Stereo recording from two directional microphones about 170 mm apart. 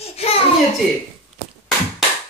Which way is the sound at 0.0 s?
35° left (ahead or behind).